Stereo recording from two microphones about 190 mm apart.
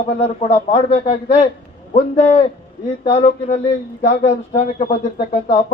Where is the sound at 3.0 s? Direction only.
30° left (ahead or behind).